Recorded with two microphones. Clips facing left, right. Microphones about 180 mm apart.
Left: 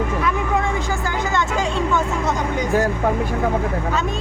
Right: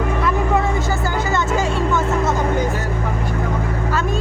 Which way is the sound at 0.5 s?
5° right (ahead or behind).